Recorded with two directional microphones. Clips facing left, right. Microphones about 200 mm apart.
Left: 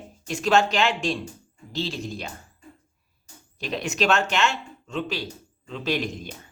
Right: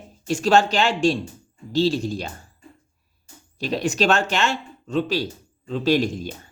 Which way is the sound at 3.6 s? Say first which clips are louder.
Right 4 dB; 35° right (ahead or behind).